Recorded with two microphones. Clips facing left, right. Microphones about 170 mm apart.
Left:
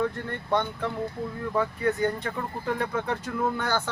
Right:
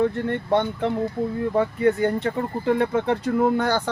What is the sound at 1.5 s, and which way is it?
Speech, 25° right (ahead or behind).